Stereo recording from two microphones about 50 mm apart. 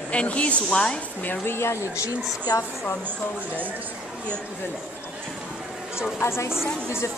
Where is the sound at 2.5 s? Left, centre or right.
Left.